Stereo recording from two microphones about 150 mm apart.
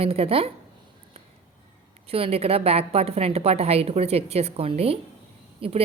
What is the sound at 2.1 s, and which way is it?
A woman's voice, 40° right (ahead or behind).